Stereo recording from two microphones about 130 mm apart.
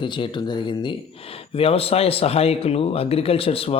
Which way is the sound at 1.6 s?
50° left (ahead or behind).